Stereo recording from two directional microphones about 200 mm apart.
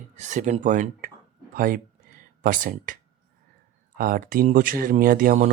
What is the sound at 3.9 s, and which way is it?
Speech, 45° right (ahead or behind).